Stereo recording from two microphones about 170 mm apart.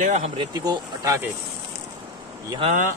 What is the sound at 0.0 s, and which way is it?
Speech, 45° right (ahead or behind).